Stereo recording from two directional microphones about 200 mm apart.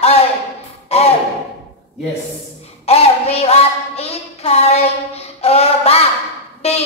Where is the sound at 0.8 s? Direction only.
30° left (ahead or behind).